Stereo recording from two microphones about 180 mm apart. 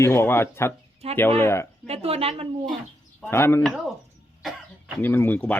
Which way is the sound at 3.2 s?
15° left (ahead or behind).